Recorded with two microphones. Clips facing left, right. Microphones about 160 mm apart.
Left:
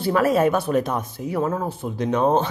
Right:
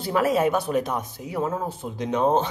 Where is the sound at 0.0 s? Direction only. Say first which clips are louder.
Left 3 dB; 15° right (ahead or behind).